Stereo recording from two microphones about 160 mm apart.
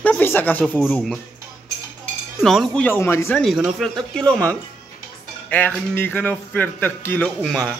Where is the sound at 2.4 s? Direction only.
Centre (ahead or behind).